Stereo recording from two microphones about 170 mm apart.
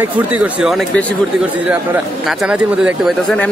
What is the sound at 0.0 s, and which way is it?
Speech, 10° right (ahead or behind).